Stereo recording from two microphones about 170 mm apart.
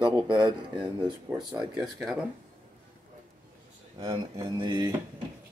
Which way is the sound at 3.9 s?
25° right (ahead or behind).